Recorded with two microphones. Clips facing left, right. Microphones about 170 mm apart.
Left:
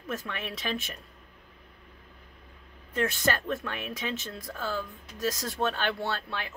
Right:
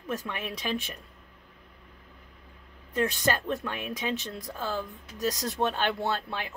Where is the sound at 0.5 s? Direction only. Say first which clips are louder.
Right 1 dB; 15° right (ahead or behind).